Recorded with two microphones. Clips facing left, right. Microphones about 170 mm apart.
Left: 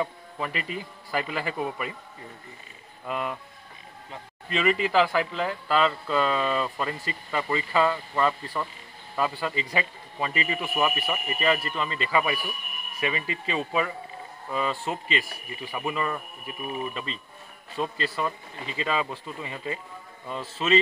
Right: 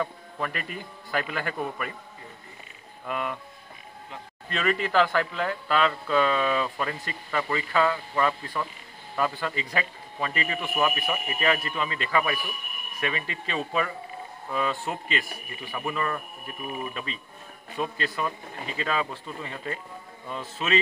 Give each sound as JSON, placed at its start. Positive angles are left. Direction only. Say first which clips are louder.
{"t": 0.5, "sound": "a man's voice", "louder": "left 2 dB", "side_deg": -55}
{"t": 0.7, "sound": "speech", "louder": "right 1 dB", "side_deg": 5}
{"t": 3.1, "sound": "speech", "louder": "even", "side_deg": 0}
{"t": 4.5, "sound": "speech", "louder": "left 2 dB", "side_deg": 5}